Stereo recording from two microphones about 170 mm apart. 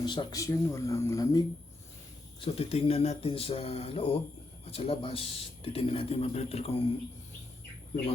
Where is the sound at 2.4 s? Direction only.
35° left (ahead or behind).